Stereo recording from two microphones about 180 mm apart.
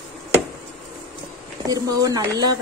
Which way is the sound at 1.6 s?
20° right (ahead or behind).